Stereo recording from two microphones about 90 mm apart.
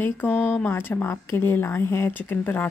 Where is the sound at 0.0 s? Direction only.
20° left (ahead or behind).